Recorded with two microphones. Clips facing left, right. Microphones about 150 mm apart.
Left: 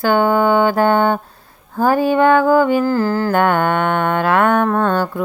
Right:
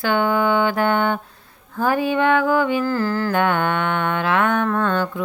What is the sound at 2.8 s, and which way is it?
Music, 30° left (ahead or behind).